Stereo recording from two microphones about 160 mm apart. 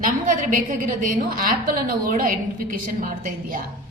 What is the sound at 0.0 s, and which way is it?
A woman's voice, 55° right (ahead or behind).